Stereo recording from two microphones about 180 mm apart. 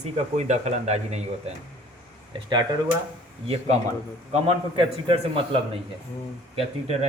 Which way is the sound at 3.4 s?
35° right (ahead or behind).